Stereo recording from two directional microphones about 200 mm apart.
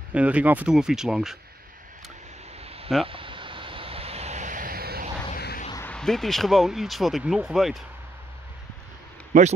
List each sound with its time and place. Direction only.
0.1 s speech: 5° right (ahead or behind)
2.6 s a sound: 30° right (ahead or behind)
3.1 s vehicle: 25° right (ahead or behind); by 5.0 s 50° right (ahead or behind)
5.3 s a sound: 45° left (ahead or behind)
5.9 s speech: 5° left (ahead or behind)
9.3 s speech: 40° right (ahead or behind)